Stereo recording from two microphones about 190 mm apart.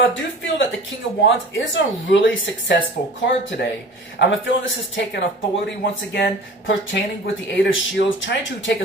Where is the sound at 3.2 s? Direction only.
65° left (ahead or behind).